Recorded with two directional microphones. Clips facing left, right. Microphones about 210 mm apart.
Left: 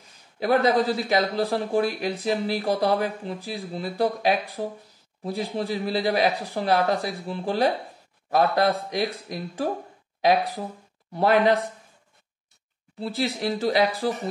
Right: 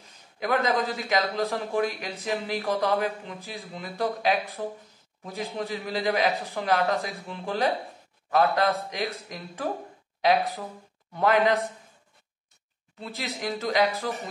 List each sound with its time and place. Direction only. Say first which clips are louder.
0.4 s a man's voice: left 5 dB; 35° left (ahead or behind)
13.0 s a man's voice: left 7 dB; 30° left (ahead or behind)